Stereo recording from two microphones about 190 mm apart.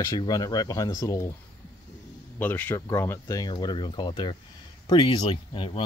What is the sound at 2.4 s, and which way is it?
Speech, 10° left (ahead or behind).